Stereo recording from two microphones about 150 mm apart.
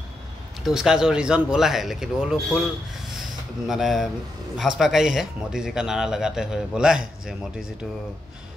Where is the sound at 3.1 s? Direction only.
Centre (ahead or behind).